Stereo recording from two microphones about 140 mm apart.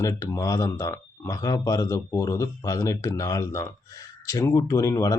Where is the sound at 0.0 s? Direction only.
25° left (ahead or behind).